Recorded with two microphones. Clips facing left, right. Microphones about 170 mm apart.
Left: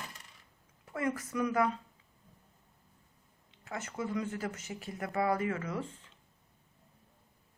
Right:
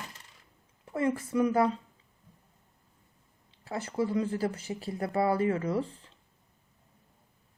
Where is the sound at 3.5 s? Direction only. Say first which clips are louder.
Right 6 dB; 35° right (ahead or behind).